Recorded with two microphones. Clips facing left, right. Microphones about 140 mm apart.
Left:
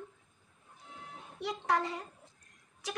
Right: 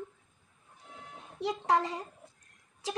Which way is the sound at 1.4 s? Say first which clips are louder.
Right 4 dB; 25° right (ahead or behind).